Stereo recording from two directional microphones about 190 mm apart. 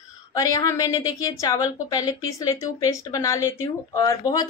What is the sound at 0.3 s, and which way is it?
A woman's voice, 20° left (ahead or behind).